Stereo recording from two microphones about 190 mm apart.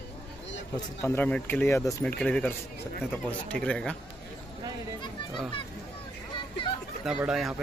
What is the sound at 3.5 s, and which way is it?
Speech, 5° left (ahead or behind).